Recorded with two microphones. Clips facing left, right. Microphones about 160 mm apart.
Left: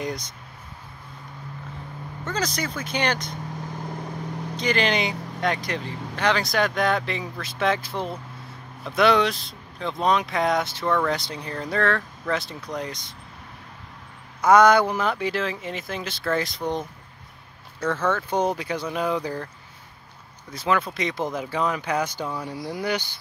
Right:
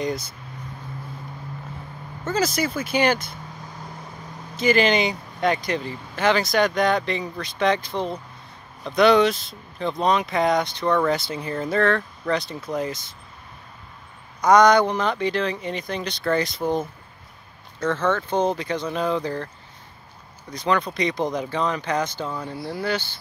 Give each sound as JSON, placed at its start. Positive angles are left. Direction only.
{"t": 0.0, "sound": "speech", "side_deg": 0}
{"t": 2.2, "sound": "speech", "side_deg": -5}
{"t": 4.6, "sound": "speech", "side_deg": -5}
{"t": 14.4, "sound": "speech", "side_deg": 5}
{"t": 17.7, "sound": "speech", "side_deg": 10}
{"t": 20.5, "sound": "speech", "side_deg": 5}